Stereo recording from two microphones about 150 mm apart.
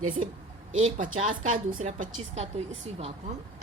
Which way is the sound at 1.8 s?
50° right (ahead or behind).